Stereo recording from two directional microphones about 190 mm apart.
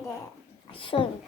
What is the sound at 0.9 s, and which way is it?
Child singing, 30° left (ahead or behind).